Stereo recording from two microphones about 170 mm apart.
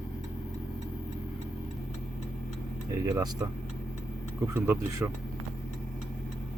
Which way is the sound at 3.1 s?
20° right (ahead or behind).